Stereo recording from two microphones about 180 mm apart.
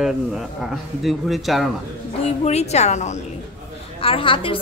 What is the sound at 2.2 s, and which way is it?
A woman's voice, 35° left (ahead or behind).